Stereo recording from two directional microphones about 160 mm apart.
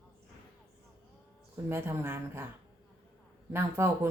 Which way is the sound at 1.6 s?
15° right (ahead or behind).